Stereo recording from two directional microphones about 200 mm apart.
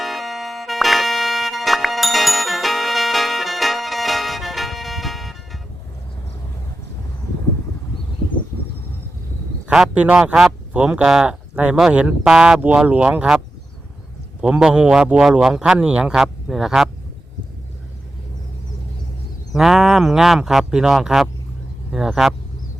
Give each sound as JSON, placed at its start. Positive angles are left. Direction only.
{"t": 0.0, "sound": "music", "side_deg": 0}
{"t": 9.6, "sound": "speech", "side_deg": -5}
{"t": 14.4, "sound": "speech", "side_deg": -5}
{"t": 19.5, "sound": "speech", "side_deg": 0}